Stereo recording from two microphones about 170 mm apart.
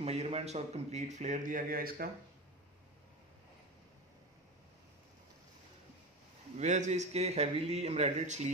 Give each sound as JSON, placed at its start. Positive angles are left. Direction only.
{"t": 0.0, "sound": "a man's voice", "side_deg": -40}
{"t": 6.6, "sound": "speech", "side_deg": -45}